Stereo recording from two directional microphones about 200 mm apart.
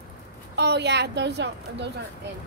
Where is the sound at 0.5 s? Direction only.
55° right (ahead or behind).